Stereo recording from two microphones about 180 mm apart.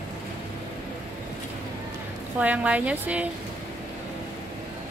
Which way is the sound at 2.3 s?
10° right (ahead or behind).